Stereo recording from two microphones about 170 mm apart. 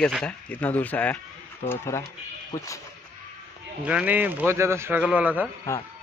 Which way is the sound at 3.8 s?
5° right (ahead or behind).